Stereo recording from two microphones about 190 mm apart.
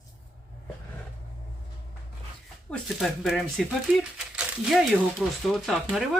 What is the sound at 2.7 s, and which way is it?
Speech, centre (ahead or behind).